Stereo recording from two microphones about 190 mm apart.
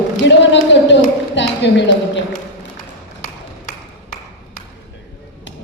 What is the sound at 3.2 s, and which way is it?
Ping, 45° left (ahead or behind).